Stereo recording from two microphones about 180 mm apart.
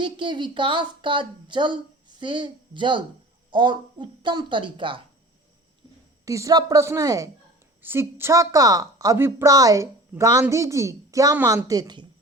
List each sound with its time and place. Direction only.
0.0 s a woman's voice: 25° right (ahead or behind)
6.2 s a woman's voice: 20° right (ahead or behind)